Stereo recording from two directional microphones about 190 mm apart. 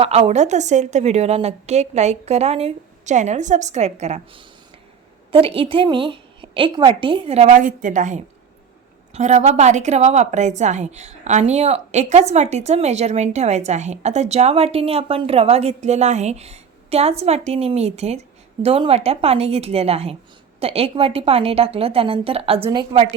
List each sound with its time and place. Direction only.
0.0 s a woman's voice: 30° right (ahead or behind)